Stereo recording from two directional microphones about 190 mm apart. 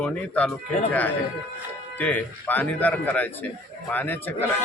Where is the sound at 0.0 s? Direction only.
5° left (ahead or behind).